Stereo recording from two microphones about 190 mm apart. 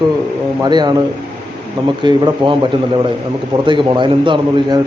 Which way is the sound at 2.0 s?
25° right (ahead or behind).